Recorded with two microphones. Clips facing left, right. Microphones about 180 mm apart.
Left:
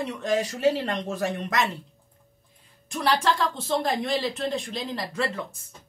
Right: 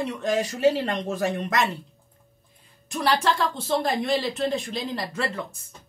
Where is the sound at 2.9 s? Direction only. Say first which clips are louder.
Right 1 dB; centre (ahead or behind).